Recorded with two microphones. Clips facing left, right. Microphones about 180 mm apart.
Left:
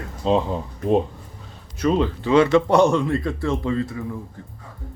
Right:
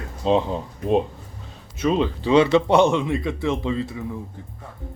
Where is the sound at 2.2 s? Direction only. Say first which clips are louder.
Even; 25° right (ahead or behind).